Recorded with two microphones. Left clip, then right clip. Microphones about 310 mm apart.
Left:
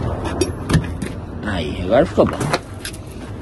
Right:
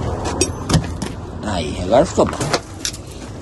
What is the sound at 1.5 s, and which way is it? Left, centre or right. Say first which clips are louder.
Speech: right 1 dB; centre.